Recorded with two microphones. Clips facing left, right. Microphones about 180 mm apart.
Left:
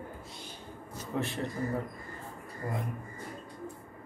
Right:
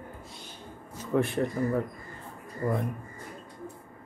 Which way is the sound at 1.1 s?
55° right (ahead or behind).